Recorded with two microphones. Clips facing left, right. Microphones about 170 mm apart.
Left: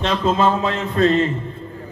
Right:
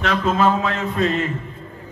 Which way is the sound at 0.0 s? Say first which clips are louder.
Left 1 dB; 25° left (ahead or behind).